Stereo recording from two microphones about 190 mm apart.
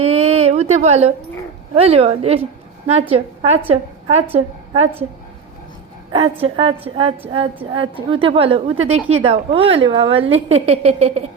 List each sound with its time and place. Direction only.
0.0 s a sound: 35° right (ahead or behind)
1.7 s a woman's voice: 30° right (ahead or behind)
6.4 s a woman's voice: 30° right (ahead or behind)